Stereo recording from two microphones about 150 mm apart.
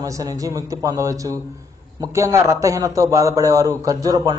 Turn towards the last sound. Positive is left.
turn(degrees=-25)  # may be behind; listen again after turning